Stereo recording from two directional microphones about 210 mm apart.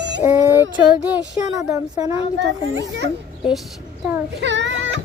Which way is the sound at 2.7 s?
65° right (ahead or behind).